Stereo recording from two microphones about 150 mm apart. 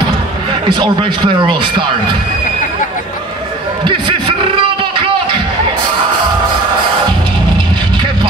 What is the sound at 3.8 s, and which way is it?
Speech, 30° right (ahead or behind).